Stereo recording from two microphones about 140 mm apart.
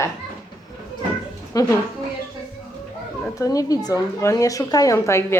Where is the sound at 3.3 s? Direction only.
25° left (ahead or behind).